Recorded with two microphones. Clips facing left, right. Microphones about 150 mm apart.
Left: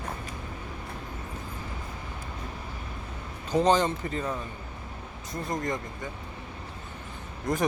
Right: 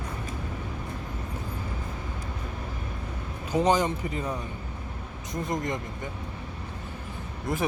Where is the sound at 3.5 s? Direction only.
10° right (ahead or behind).